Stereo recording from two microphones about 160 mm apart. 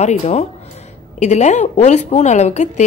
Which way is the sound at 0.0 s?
45° left (ahead or behind).